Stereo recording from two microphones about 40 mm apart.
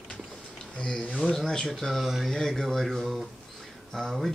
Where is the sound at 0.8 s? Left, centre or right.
Left.